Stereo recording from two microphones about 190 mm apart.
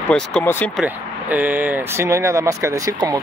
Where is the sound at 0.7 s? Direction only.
10° right (ahead or behind).